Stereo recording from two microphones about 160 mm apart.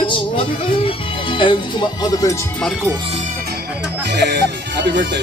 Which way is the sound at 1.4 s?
30° left (ahead or behind).